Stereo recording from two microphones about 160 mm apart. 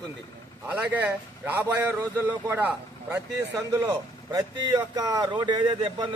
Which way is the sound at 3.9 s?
25° right (ahead or behind).